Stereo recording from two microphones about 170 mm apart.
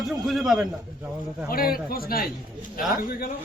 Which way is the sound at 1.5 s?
60° left (ahead or behind).